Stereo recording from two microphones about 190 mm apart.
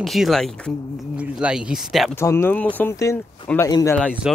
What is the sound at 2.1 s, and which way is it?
Speech, 15° left (ahead or behind).